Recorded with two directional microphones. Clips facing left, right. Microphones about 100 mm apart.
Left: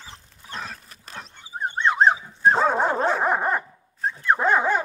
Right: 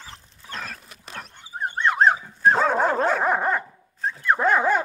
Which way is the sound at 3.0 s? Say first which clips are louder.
Even; centre (ahead or behind).